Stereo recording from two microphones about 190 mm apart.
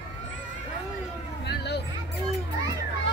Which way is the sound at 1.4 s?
65° left (ahead or behind).